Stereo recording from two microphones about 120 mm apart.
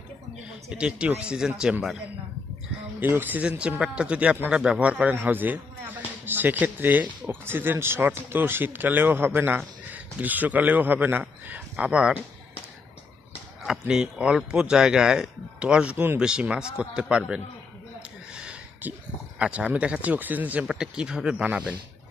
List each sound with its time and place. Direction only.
0.7 s speech: 10° right (ahead or behind)
3.0 s speech: 15° right (ahead or behind)
13.7 s speech: 5° right (ahead or behind)
18.4 s speech: 10° right (ahead or behind)